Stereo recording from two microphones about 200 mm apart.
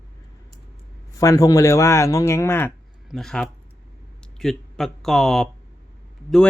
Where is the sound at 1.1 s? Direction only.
15° left (ahead or behind).